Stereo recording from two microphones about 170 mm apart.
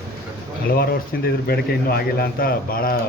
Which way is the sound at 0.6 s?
65° left (ahead or behind).